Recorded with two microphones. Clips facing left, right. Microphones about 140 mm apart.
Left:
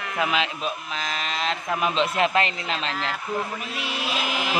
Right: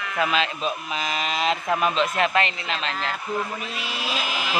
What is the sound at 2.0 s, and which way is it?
Speech, 30° left (ahead or behind).